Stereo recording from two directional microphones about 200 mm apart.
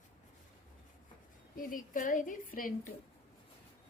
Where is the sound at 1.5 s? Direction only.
40° left (ahead or behind).